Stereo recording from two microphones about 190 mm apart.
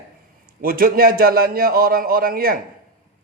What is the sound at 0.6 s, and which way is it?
Speech, 50° right (ahead or behind).